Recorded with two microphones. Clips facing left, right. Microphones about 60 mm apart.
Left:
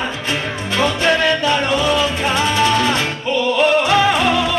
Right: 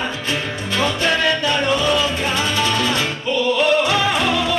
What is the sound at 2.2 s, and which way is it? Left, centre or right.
Music, left.